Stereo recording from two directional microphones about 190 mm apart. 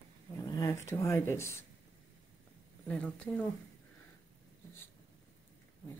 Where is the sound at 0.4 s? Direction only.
15° left (ahead or behind).